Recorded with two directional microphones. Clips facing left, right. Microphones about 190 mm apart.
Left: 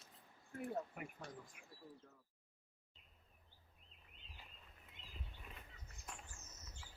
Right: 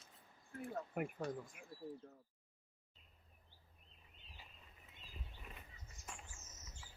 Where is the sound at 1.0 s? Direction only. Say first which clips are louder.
Right 10 dB; 50° right (ahead or behind).